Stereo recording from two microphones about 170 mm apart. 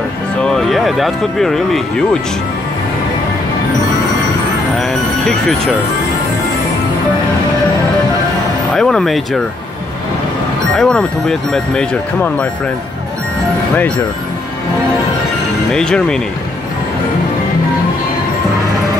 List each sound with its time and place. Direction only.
0.4 s speech: 5° left (ahead or behind)
4.7 s music: 5° left (ahead or behind)
8.7 s speech: 5° left (ahead or behind)
10.8 s speech: 5° left (ahead or behind)
15.7 s speech: 5° left (ahead or behind)